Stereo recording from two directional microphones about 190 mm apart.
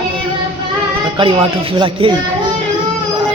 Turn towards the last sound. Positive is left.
turn(degrees=-25)  # may be behind; listen again after turning